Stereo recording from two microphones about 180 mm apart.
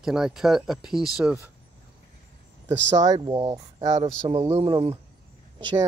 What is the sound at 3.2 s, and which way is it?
Speech, 20° right (ahead or behind).